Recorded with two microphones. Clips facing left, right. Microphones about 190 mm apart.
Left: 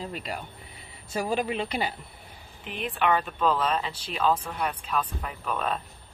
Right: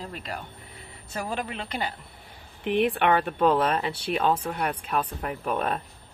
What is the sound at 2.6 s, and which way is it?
Speech, 65° right (ahead or behind).